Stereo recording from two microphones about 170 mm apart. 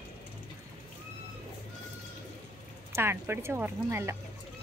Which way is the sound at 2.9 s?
15° right (ahead or behind).